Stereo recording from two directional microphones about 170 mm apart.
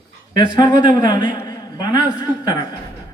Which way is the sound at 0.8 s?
25° left (ahead or behind).